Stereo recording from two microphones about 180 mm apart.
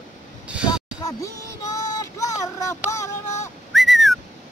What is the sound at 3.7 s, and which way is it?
Whistling, centre (ahead or behind).